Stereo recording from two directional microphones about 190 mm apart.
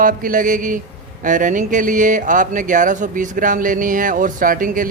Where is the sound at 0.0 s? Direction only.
45° right (ahead or behind).